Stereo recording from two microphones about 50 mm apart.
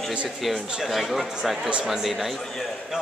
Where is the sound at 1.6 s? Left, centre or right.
Centre.